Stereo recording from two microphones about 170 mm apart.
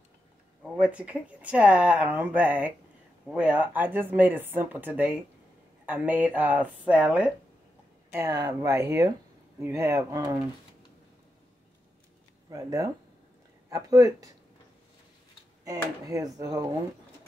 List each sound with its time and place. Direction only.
0.7 s speech: 5° right (ahead or behind)
8.1 s speech: 20° right (ahead or behind)
12.4 s speech: 20° right (ahead or behind)
15.6 s speech: 20° right (ahead or behind)